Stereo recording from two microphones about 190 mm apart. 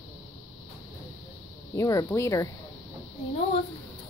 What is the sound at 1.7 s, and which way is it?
Speech, 15° left (ahead or behind).